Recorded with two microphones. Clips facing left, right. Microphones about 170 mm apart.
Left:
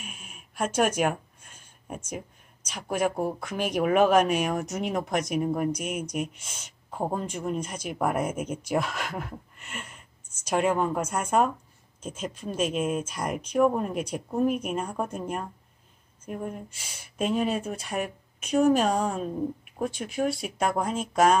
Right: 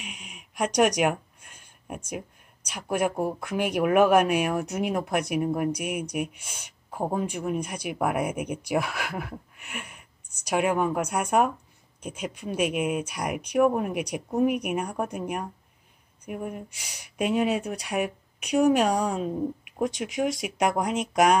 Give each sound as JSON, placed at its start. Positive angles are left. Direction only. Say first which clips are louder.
{"t": 0.6, "sound": "a sound", "louder": "right 2 dB", "side_deg": -15}
{"t": 3.0, "sound": "speech", "louder": "even", "side_deg": -10}
{"t": 19.9, "sound": "speech", "louder": "right 3 dB", "side_deg": -90}
{"t": 20.3, "sound": "speech", "louder": "right 2 dB", "side_deg": -15}